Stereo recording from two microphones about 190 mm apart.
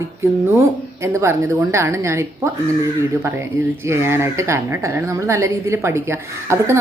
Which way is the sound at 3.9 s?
15° right (ahead or behind).